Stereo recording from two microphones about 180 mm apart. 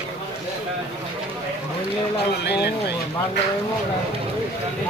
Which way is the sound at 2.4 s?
65° left (ahead or behind).